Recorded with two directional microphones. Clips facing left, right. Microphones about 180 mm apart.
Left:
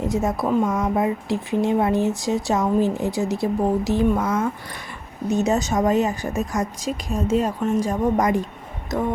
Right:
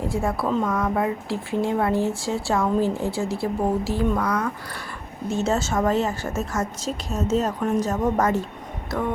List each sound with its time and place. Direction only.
0.0 s a woman's voice: 20° left (ahead or behind)